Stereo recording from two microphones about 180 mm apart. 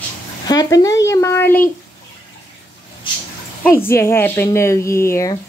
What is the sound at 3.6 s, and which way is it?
Speech, 15° left (ahead or behind).